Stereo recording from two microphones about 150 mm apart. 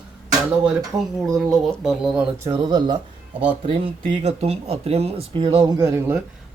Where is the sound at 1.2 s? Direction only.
Centre (ahead or behind).